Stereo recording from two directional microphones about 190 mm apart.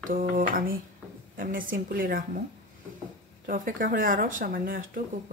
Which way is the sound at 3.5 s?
45° right (ahead or behind).